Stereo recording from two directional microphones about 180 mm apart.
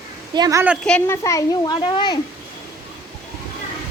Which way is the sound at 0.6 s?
5° right (ahead or behind).